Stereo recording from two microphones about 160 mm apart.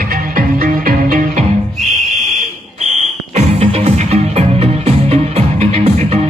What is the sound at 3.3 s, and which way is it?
Music, 40° right (ahead or behind).